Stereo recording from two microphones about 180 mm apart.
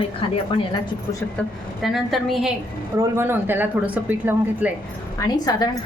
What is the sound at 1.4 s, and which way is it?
A woman's voice, 10° left (ahead or behind).